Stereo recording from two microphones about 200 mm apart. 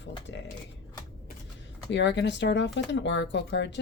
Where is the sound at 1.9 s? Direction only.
60° left (ahead or behind).